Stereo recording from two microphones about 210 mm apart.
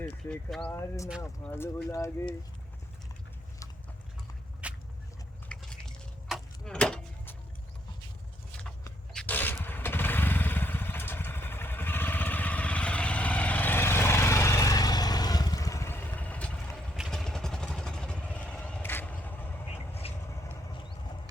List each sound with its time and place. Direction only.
0.0 s speech: 5° left (ahead or behind)
4.6 s vehicle: 5° right (ahead or behind)
5.5 s a sound: 5° left (ahead or behind)
9.1 s motorcycle: 10° left (ahead or behind)
17.0 s vehicle: centre (ahead or behind)
19.7 s vehicle: 30° left (ahead or behind)